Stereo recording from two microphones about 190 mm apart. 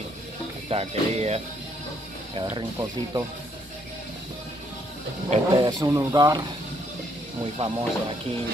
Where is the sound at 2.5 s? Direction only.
20° right (ahead or behind).